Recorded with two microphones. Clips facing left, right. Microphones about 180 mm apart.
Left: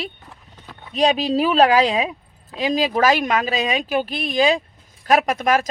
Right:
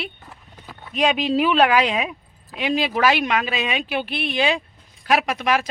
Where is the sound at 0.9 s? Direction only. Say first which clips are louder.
Left 2 dB; 35° left (ahead or behind).